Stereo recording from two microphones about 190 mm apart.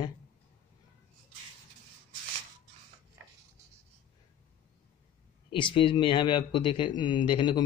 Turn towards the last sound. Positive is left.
turn(degrees=25)  # may be behind; listen again after turning